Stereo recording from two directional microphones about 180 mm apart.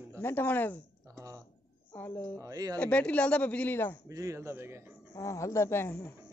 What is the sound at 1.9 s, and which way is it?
Speech, 10° left (ahead or behind).